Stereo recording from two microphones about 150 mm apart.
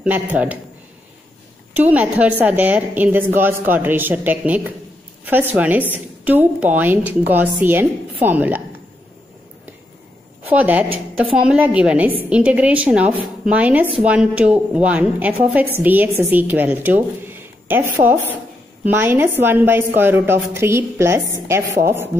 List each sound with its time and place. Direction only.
0.0 s a woman's voice: 10° right (ahead or behind)
1.8 s a woman's voice: 10° right (ahead or behind)
10.5 s a woman's voice: 10° right (ahead or behind)